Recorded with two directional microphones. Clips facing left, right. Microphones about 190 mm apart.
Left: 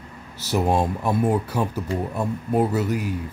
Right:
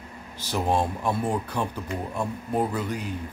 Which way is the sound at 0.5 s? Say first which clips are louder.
Left 4 dB; 10° left (ahead or behind).